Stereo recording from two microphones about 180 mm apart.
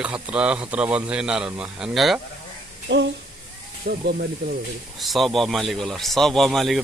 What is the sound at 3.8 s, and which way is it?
Speech, 60° right (ahead or behind).